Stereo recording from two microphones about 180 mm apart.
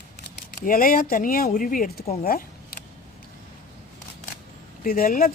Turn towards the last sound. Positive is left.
turn(degrees=55)  # may be behind; listen again after turning